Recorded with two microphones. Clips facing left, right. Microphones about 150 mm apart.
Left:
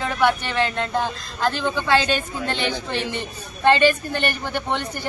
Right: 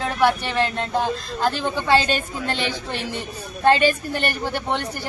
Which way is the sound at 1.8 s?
35° right (ahead or behind).